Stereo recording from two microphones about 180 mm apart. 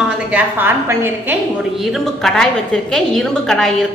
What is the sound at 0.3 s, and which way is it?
A woman's voice, 10° right (ahead or behind).